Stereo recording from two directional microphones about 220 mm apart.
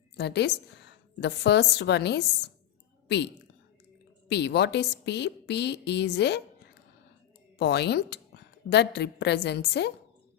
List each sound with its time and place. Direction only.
0.2 s a woman's voice: 50° left (ahead or behind)
4.3 s a woman's voice: 50° left (ahead or behind)
7.6 s a woman's voice: 50° left (ahead or behind)